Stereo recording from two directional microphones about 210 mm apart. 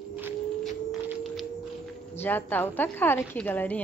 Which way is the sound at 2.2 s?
10° left (ahead or behind).